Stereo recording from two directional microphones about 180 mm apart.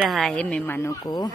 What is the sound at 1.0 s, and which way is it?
Speech, 25° left (ahead or behind).